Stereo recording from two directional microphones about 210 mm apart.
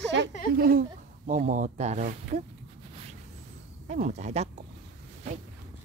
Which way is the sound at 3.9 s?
35° right (ahead or behind).